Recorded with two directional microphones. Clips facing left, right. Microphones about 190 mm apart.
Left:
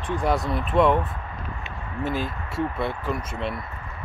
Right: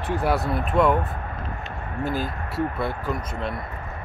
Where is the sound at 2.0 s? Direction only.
Centre (ahead or behind).